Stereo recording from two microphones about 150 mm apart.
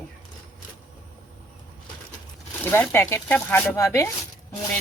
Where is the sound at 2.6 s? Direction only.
15° left (ahead or behind).